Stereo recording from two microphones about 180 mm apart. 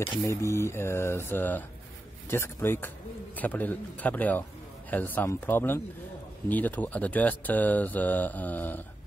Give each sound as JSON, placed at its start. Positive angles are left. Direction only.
{"t": 0.0, "sound": "speech", "side_deg": 15}